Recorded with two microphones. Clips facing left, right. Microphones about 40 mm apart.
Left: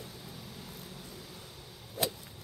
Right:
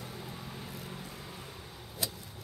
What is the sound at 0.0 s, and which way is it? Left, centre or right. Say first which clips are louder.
Vehicle: right 3 dB; right.